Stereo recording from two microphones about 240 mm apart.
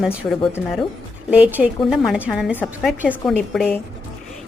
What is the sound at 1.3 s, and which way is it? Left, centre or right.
A woman's voice, centre.